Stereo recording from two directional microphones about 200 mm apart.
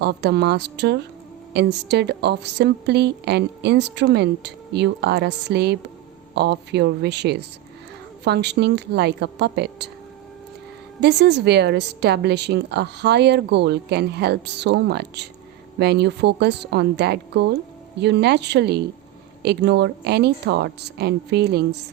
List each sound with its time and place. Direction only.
0.0 s a woman's voice: 55° right (ahead or behind)
11.0 s a woman's voice: 55° right (ahead or behind)